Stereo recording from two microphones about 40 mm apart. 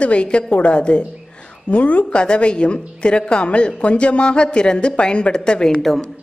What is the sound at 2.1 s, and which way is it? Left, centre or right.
Speech, left.